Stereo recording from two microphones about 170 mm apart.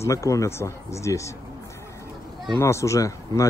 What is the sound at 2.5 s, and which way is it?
Speech, 15° left (ahead or behind).